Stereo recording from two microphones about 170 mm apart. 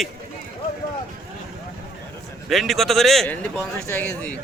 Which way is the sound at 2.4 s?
Centre (ahead or behind).